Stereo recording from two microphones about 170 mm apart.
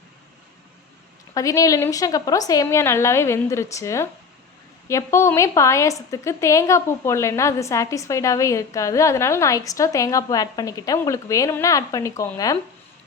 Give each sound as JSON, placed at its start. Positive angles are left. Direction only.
{"t": 1.3, "sound": "a woman's voice", "side_deg": 20}